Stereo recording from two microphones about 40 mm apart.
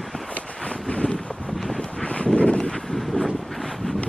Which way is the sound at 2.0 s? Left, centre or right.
Left.